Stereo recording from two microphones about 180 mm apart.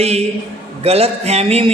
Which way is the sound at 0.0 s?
35° right (ahead or behind).